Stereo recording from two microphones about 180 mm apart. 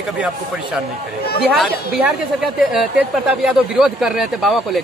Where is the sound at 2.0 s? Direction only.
5° right (ahead or behind).